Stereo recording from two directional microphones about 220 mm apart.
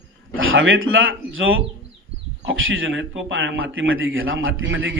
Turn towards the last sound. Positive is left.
turn(degrees=-60)  # may be behind; listen again after turning